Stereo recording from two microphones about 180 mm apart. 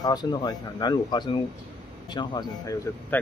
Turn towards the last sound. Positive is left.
turn(degrees=15)  # may be behind; listen again after turning